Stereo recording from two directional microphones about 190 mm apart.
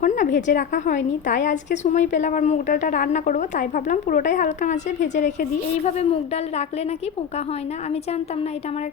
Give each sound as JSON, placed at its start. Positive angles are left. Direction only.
{"t": 0.0, "sound": "a woman's voice", "side_deg": 40}